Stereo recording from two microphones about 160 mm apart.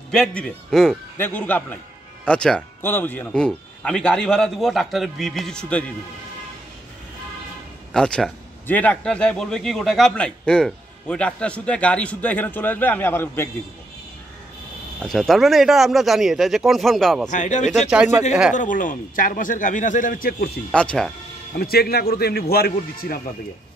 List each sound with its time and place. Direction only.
0.1 s a man's voice: 5° left (ahead or behind)
7.9 s a man's voice: 5° left (ahead or behind)
15.0 s speech: centre (ahead or behind)
17.3 s speech: 50° left (ahead or behind)
17.6 s speech: 5° right (ahead or behind)
18.5 s a man's voice: 55° left (ahead or behind)
20.7 s a man's voice: 5° left (ahead or behind)
21.5 s a man's voice: 75° left (ahead or behind)